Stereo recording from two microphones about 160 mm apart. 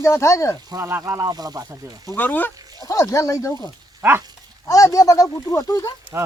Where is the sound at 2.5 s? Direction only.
25° right (ahead or behind).